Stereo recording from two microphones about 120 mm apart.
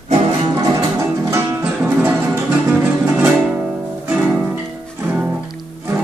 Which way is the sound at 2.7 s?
10° right (ahead or behind).